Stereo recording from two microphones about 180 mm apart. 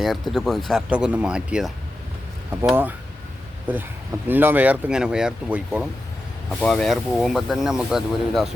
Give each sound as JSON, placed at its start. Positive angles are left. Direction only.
{"t": 0.0, "sound": "speech", "side_deg": 0}
{"t": 6.6, "sound": "speech", "side_deg": 5}